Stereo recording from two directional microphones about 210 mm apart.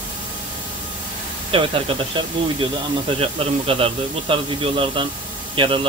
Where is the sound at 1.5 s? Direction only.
25° right (ahead or behind).